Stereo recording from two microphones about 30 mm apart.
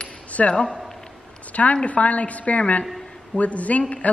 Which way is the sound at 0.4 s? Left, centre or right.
Left.